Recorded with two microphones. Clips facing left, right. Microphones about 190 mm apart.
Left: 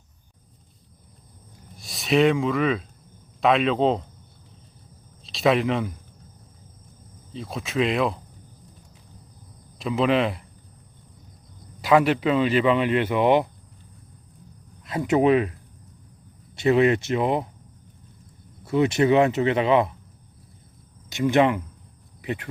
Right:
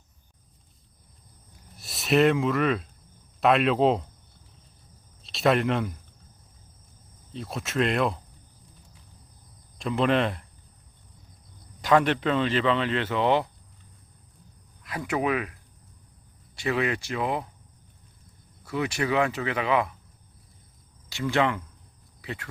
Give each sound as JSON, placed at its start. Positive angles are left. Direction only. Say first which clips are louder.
{"t": 1.7, "sound": "speech", "louder": "left 2 dB", "side_deg": 0}
{"t": 5.2, "sound": "speech", "louder": "left 2 dB", "side_deg": 0}
{"t": 7.3, "sound": "speech", "louder": "left 2 dB", "side_deg": 0}
{"t": 9.7, "sound": "speech", "louder": "left 2 dB", "side_deg": 0}
{"t": 11.8, "sound": "speech", "louder": "left 3 dB", "side_deg": 10}
{"t": 14.8, "sound": "speech", "louder": "left 8 dB", "side_deg": 25}
{"t": 16.6, "sound": "speech", "louder": "left 8 dB", "side_deg": 25}
{"t": 18.6, "sound": "speech", "louder": "left 8 dB", "side_deg": 25}
{"t": 21.1, "sound": "speech", "louder": "left 6 dB", "side_deg": 20}